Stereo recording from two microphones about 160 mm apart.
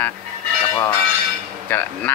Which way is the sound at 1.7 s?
10° left (ahead or behind).